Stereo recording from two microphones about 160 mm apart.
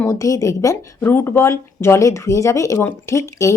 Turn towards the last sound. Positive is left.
turn(degrees=20)  # may be behind; listen again after turning